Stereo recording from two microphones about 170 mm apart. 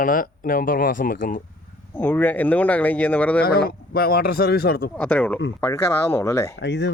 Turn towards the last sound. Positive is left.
turn(degrees=90)